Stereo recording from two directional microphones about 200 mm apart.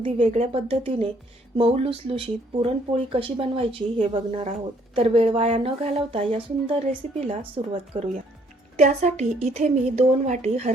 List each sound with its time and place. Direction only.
0.0 s a woman's voice: 35° right (ahead or behind)